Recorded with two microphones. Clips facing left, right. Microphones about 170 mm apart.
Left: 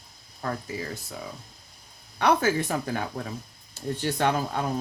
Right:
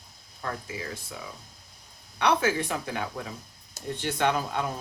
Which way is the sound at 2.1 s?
45° left (ahead or behind).